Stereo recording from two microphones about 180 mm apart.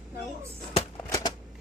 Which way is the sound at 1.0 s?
20° left (ahead or behind).